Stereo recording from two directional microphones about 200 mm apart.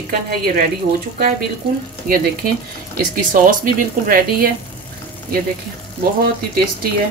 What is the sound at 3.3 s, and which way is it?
Speech, 40° right (ahead or behind).